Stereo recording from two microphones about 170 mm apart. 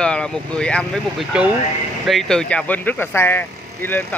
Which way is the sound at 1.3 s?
5° right (ahead or behind).